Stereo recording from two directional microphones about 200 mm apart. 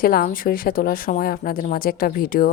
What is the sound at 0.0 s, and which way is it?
Speech, 45° left (ahead or behind).